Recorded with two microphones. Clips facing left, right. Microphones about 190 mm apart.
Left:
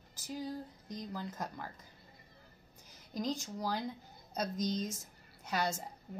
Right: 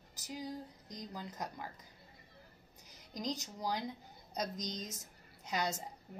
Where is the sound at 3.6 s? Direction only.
15° right (ahead or behind).